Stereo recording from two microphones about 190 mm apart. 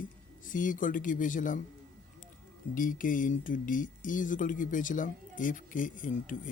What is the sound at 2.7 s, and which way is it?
Speech, 45° left (ahead or behind).